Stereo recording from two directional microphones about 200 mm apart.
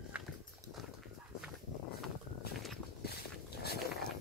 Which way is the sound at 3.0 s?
55° left (ahead or behind).